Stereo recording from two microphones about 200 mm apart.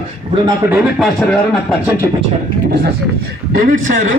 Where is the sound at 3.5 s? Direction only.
45° right (ahead or behind).